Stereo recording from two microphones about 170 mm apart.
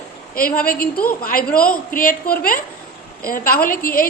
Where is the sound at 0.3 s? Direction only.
60° left (ahead or behind).